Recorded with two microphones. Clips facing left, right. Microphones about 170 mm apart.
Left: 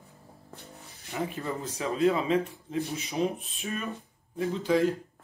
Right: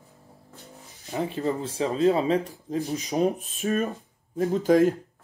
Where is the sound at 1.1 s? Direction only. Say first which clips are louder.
Right 6 dB; 35° right (ahead or behind).